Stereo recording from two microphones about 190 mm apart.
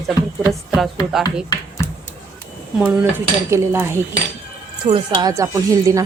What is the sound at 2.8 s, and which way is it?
Speech, 15° right (ahead or behind).